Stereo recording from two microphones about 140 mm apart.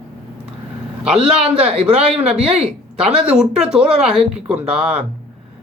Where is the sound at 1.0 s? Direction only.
5° right (ahead or behind).